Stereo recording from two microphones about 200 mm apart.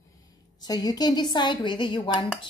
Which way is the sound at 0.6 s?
20° left (ahead or behind).